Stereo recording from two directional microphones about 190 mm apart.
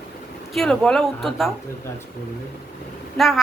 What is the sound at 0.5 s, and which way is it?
Speech, 5° left (ahead or behind).